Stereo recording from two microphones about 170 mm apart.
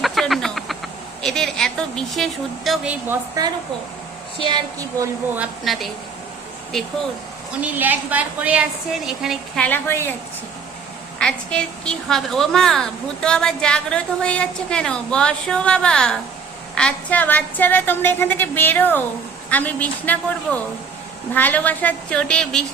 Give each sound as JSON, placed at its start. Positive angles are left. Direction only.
{"t": 0.0, "sound": "a sound", "side_deg": 0}
{"t": 1.2, "sound": "a woman's voice", "side_deg": 5}
{"t": 3.1, "sound": "a woman's voice", "side_deg": -20}
{"t": 5.4, "sound": "a woman's voice", "side_deg": 0}
{"t": 7.6, "sound": "a woman's voice", "side_deg": -10}
{"t": 9.6, "sound": "a woman's voice", "side_deg": 10}
{"t": 11.2, "sound": "a woman's voice", "side_deg": 5}